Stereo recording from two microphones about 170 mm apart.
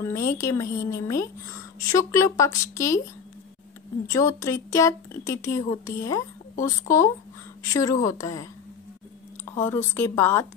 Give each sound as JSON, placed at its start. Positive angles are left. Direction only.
{"t": 0.0, "sound": "a woman's voice", "side_deg": 15}
{"t": 4.1, "sound": "a woman's voice", "side_deg": 20}
{"t": 9.6, "sound": "a woman's voice", "side_deg": 15}